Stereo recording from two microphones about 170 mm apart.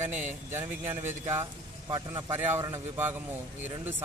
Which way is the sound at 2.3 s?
15° right (ahead or behind).